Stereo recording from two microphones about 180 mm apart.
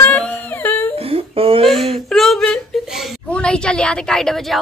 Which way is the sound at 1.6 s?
Centre (ahead or behind).